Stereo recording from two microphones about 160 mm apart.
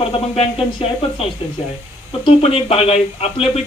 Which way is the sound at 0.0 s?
35° left (ahead or behind).